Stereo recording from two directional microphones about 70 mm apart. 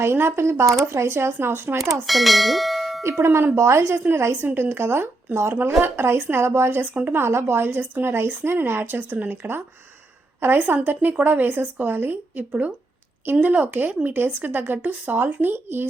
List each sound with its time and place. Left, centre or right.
0.0 s a woman's voice: right
2.0 s speech: centre
3.0 s a woman's voice: right